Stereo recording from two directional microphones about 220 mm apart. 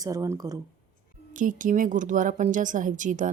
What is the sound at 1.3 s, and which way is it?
A woman's voice, 35° right (ahead or behind).